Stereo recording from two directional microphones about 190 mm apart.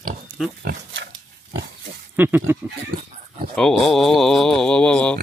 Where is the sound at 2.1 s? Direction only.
10° right (ahead or behind).